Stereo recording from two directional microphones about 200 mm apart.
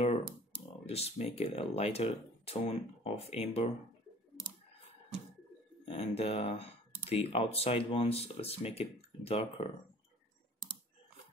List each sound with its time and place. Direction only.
0.8 s speech: 30° left (ahead or behind)
5.9 s speech: 30° left (ahead or behind)